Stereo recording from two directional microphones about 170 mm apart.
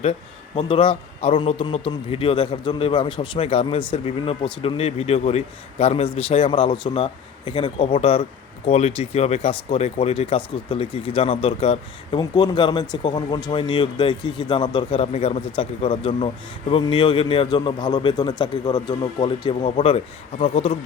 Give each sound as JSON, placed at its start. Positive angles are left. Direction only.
{"t": 0.0, "sound": "speech", "side_deg": 40}